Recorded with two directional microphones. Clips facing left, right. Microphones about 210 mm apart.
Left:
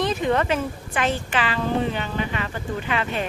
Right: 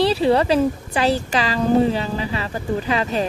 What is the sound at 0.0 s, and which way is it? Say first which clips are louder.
A woman's voice: right 5 dB; 30° right (ahead or behind).